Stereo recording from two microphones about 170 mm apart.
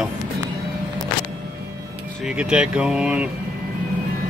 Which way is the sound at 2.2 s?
5° right (ahead or behind).